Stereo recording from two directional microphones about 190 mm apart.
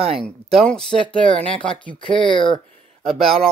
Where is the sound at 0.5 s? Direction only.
5° left (ahead or behind).